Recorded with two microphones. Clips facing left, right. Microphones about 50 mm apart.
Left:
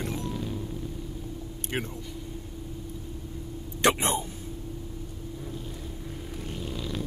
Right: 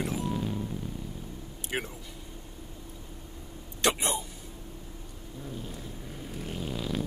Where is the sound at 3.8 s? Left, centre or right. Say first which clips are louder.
Left 4 dB; left.